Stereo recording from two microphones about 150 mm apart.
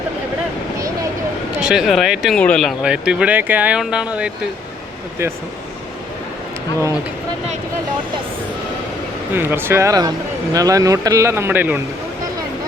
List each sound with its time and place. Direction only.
1.5 s speech: 5° right (ahead or behind)
9.3 s a man's voice: 15° right (ahead or behind)